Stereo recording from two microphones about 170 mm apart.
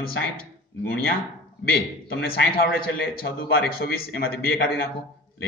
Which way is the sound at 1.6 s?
70° left (ahead or behind).